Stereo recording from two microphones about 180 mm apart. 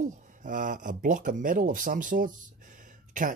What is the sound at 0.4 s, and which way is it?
Speech, 45° right (ahead or behind).